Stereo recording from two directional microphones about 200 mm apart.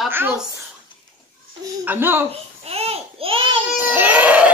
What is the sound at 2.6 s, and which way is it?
Babbling, 30° right (ahead or behind).